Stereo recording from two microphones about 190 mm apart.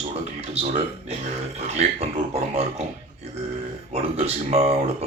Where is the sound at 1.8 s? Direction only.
35° right (ahead or behind).